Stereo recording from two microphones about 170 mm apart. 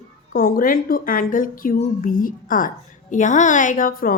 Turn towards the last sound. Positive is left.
turn(degrees=55)  # may be behind; listen again after turning